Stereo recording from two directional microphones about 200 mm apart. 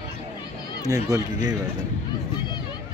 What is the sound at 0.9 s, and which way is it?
Speech, 15° right (ahead or behind).